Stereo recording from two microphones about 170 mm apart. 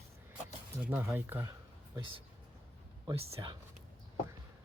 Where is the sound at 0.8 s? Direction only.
10° right (ahead or behind).